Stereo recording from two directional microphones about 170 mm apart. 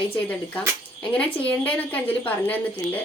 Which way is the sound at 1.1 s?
10° left (ahead or behind).